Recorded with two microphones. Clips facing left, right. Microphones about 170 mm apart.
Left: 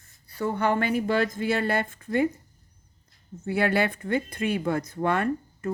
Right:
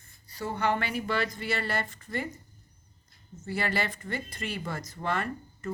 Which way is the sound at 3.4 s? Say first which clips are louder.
Left 7 dB; 60° left (ahead or behind).